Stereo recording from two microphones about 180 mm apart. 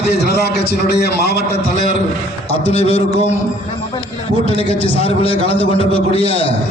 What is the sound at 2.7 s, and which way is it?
Speech, 35° left (ahead or behind).